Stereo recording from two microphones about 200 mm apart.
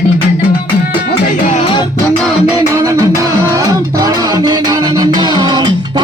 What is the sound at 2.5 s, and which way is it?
Music, 15° right (ahead or behind).